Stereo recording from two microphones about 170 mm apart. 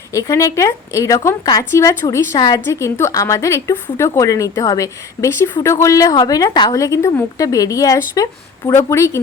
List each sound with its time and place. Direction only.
0.1 s speech: 20° left (ahead or behind)